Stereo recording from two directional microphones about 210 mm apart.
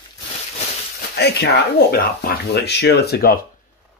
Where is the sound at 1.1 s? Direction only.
50° left (ahead or behind).